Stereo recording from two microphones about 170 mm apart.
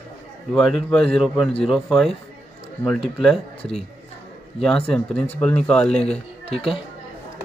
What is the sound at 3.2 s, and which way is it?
A man's voice, 5° left (ahead or behind).